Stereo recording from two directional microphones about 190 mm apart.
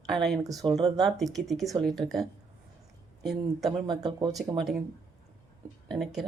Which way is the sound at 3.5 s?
Centre (ahead or behind).